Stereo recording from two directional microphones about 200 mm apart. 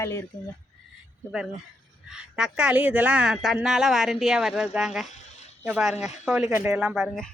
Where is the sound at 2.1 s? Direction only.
5° right (ahead or behind).